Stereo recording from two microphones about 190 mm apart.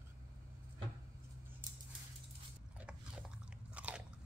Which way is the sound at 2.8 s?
5° right (ahead or behind).